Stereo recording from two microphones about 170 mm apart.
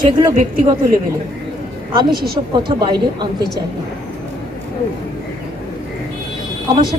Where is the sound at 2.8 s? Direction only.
25° right (ahead or behind).